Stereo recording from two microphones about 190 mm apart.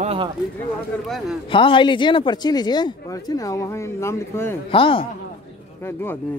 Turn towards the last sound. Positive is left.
turn(degrees=10)  # may be behind; listen again after turning